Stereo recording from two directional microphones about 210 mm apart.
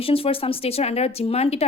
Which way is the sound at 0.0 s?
25° left (ahead or behind).